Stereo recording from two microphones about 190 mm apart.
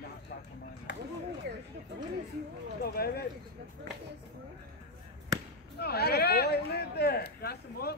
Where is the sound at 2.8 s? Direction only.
55° left (ahead or behind).